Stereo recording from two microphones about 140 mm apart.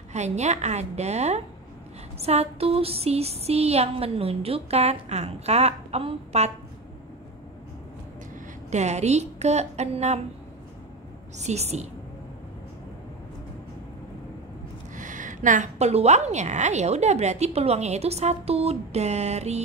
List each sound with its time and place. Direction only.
0.1 s a woman's voice: 55° right (ahead or behind)
8.6 s a woman's voice: 55° right (ahead or behind)
11.3 s a woman's voice: 50° right (ahead or behind)
15.0 s a woman's voice: 65° right (ahead or behind)